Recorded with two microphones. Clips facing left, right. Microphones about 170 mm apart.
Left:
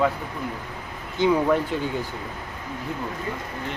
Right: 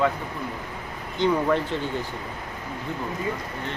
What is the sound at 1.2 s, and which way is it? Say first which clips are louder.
Speech: left 2 dB; 10° left (ahead or behind).